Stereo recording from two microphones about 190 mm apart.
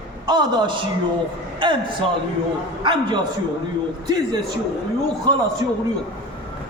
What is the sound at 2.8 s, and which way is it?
Speech, 25° right (ahead or behind).